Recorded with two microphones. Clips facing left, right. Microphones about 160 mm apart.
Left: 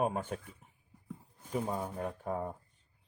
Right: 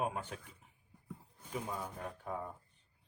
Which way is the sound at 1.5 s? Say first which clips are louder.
Left 6 dB; 40° left (ahead or behind).